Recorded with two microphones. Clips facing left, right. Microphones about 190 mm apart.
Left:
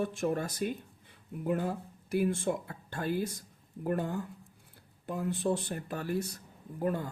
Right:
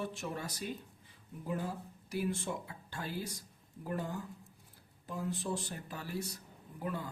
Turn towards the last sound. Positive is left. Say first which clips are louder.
# left 7 dB
turn(degrees=50)  # may be behind; listen again after turning